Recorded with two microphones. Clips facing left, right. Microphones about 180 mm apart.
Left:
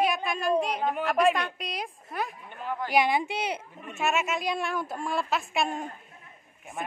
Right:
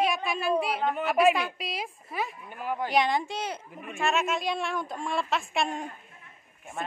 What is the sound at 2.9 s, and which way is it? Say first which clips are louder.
A woman's voice: left 2 dB; 5° left (ahead or behind).